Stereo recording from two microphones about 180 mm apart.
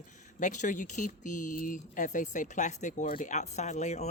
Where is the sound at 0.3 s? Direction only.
45° left (ahead or behind).